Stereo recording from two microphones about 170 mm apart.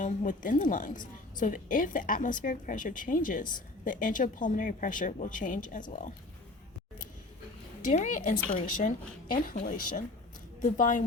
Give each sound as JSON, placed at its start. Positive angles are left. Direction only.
{"t": 0.0, "sound": "speech", "side_deg": 50}
{"t": 7.8, "sound": "a woman's voice", "side_deg": 45}